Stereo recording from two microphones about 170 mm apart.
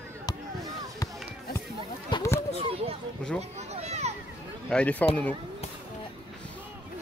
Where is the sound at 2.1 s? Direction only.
15° left (ahead or behind).